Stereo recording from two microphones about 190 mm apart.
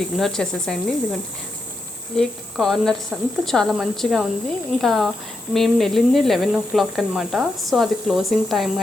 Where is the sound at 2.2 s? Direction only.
Centre (ahead or behind).